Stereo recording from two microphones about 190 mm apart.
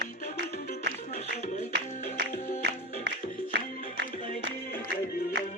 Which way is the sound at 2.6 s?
65° right (ahead or behind).